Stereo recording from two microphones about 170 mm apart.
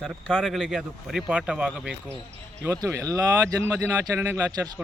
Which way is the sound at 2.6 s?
15° right (ahead or behind).